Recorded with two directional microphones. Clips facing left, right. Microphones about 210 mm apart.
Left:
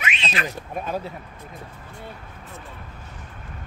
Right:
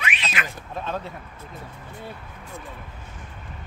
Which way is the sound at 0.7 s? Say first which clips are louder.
Even; 10° left (ahead or behind).